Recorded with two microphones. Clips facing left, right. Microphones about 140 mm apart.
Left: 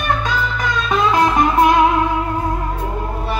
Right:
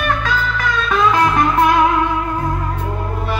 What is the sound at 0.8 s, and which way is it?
Music, 20° left (ahead or behind).